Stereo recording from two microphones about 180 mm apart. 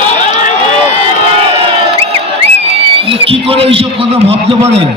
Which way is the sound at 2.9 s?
30° right (ahead or behind).